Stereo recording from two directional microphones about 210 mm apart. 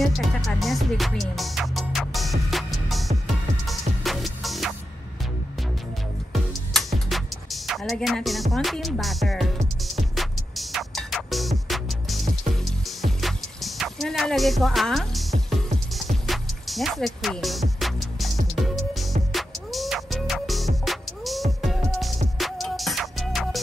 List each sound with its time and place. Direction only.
0.0 s music: centre (ahead or behind)
6.7 s music: centre (ahead or behind)
15.3 s music: 30° right (ahead or behind)
16.3 s music: centre (ahead or behind)